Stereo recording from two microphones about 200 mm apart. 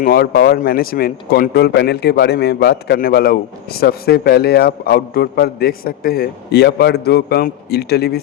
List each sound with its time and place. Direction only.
0.0 s a man's voice: 50° left (ahead or behind)